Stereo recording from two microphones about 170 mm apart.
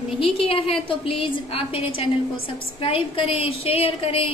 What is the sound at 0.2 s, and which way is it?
A woman's voice, 35° left (ahead or behind).